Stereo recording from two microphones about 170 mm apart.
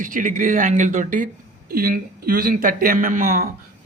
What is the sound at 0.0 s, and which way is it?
Speech, 50° right (ahead or behind).